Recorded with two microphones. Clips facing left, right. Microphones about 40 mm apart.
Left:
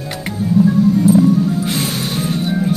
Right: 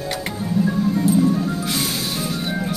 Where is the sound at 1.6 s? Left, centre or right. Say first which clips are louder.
Left 4 dB; left.